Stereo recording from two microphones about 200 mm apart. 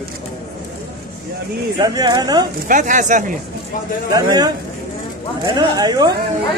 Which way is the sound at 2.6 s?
40° right (ahead or behind).